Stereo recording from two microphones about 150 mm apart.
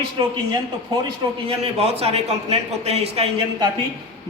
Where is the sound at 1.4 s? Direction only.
40° right (ahead or behind).